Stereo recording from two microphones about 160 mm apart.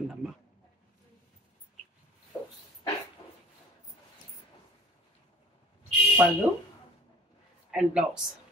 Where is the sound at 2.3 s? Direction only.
25° left (ahead or behind).